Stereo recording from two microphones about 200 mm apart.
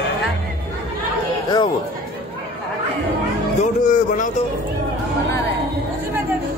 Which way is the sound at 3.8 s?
40° left (ahead or behind).